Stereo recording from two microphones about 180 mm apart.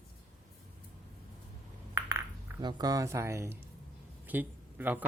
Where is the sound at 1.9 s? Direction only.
15° right (ahead or behind).